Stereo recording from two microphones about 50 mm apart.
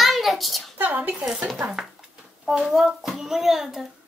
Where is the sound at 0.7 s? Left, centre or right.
Right.